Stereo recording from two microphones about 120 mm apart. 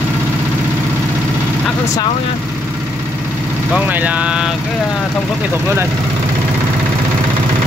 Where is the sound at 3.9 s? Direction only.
15° right (ahead or behind).